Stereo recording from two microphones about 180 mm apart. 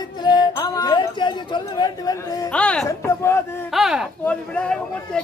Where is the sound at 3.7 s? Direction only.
Centre (ahead or behind).